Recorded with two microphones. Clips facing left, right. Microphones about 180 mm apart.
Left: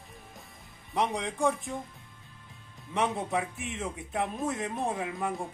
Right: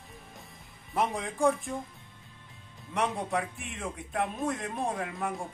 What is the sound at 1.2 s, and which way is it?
Speech, centre (ahead or behind).